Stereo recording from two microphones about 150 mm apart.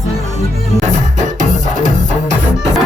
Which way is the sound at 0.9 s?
55° right (ahead or behind).